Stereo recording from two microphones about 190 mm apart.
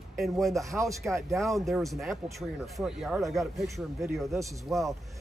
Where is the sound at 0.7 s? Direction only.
15° right (ahead or behind).